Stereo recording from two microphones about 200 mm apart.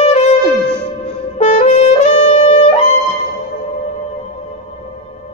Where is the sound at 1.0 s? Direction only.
30° left (ahead or behind).